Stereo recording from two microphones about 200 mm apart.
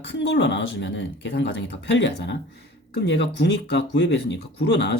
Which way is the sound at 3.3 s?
55° left (ahead or behind).